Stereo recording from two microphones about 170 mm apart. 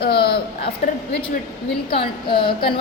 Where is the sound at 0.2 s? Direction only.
30° left (ahead or behind).